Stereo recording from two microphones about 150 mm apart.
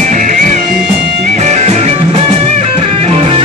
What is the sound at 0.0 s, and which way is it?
Music, 60° right (ahead or behind).